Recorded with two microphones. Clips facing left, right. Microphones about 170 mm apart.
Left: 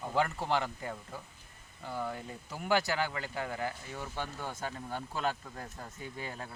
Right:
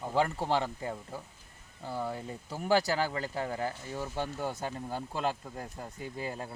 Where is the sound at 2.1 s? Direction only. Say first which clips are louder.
Right 3 dB; 30° right (ahead or behind).